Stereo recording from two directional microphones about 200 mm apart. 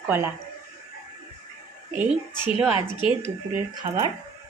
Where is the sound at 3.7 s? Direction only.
20° right (ahead or behind).